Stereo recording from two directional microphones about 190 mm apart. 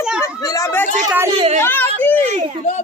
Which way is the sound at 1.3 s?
30° right (ahead or behind).